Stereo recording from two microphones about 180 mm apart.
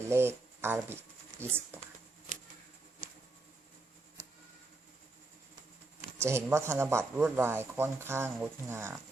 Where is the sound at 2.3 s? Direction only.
45° right (ahead or behind).